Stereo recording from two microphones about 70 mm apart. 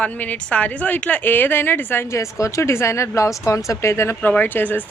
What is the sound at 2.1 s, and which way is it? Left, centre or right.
Speech, left.